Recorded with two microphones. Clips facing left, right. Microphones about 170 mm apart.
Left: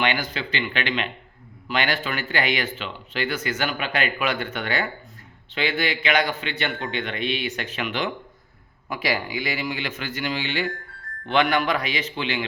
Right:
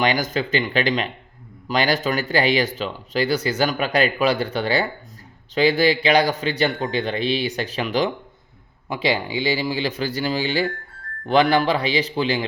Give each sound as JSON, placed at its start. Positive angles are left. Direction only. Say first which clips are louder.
{"t": 0.0, "sound": "speech", "louder": "right 4 dB", "side_deg": -40}